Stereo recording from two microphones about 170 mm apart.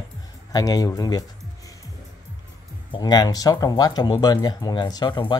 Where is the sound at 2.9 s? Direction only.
25° left (ahead or behind).